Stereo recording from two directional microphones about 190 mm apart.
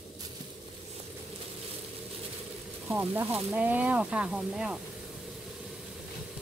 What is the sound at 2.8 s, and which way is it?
Speech, 10° right (ahead or behind).